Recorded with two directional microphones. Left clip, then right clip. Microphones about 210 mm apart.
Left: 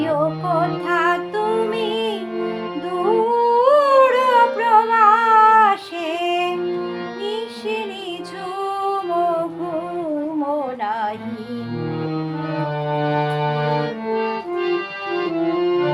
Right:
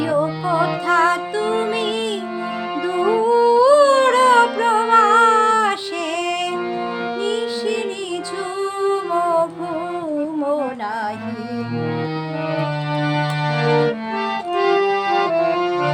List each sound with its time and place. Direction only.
0.4 s music: 15° right (ahead or behind)
3.4 s humming: 15° right (ahead or behind)
6.2 s music: 15° right (ahead or behind)
13.0 s music: 50° right (ahead or behind)